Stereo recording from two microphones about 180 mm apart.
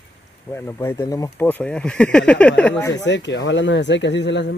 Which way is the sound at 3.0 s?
80° left.